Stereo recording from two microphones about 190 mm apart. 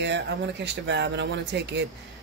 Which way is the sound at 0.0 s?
65° right (ahead or behind).